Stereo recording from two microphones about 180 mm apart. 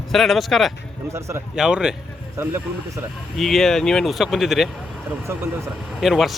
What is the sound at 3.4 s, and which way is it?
Speech, centre (ahead or behind).